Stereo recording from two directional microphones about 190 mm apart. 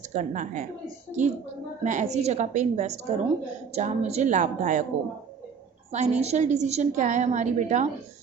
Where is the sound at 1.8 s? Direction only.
40° right (ahead or behind).